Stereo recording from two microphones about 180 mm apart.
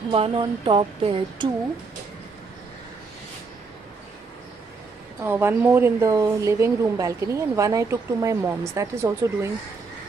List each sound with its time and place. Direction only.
0.1 s speech: 30° right (ahead or behind)
5.2 s speech: 10° right (ahead or behind)